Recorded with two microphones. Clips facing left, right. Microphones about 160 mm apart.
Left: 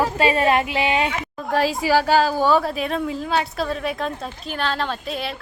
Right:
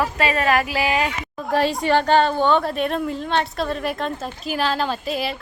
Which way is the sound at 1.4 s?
Centre (ahead or behind).